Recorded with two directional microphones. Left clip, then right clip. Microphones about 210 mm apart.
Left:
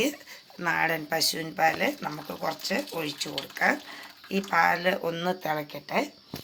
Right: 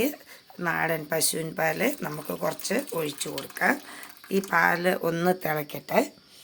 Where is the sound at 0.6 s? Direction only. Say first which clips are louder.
Left 1 dB; 40° right (ahead or behind).